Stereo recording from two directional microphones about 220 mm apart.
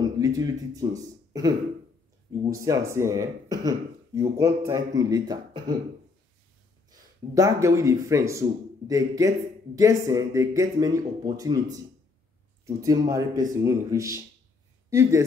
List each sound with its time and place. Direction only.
0.0 s speech: 15° right (ahead or behind)
7.3 s speech: 15° right (ahead or behind)